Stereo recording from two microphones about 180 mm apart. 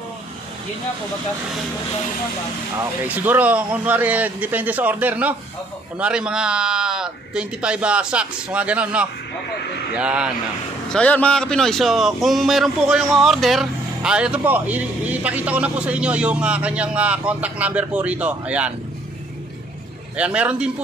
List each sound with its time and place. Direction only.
3.0 s a man's voice: 10° right (ahead or behind)
10.9 s a man's voice: 5° left (ahead or behind)
20.2 s a man's voice: 5° right (ahead or behind)